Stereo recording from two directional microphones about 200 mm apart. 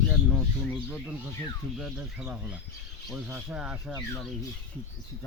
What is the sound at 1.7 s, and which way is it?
Speech, centre (ahead or behind).